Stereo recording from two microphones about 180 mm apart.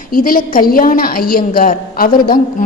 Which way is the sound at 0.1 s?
50° left (ahead or behind).